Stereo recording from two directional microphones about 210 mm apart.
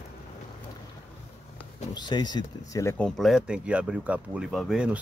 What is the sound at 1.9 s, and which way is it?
Speech, 20° left (ahead or behind).